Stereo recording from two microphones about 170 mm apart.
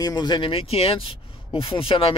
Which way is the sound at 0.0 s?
25° left (ahead or behind).